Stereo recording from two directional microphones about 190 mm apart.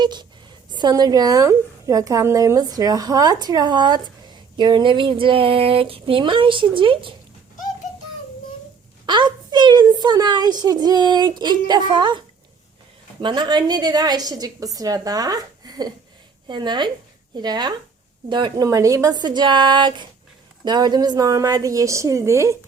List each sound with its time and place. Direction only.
0.0 s a woman's voice: 25° right (ahead or behind)
9.0 s a woman's voice: 25° right (ahead or behind)
13.2 s a woman's voice: 25° right (ahead or behind)